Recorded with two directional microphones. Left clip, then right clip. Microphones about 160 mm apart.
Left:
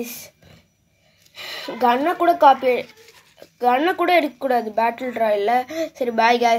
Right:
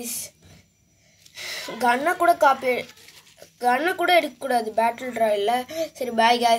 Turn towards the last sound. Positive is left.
turn(degrees=30)  # may be behind; listen again after turning